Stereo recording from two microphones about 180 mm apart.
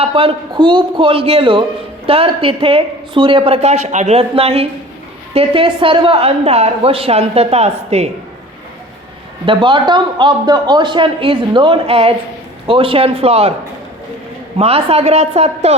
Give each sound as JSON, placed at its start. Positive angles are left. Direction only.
{"t": 0.0, "sound": "a man's voice", "side_deg": -30}
{"t": 9.5, "sound": "a man's voice", "side_deg": -25}
{"t": 14.6, "sound": "a woman's voice", "side_deg": -35}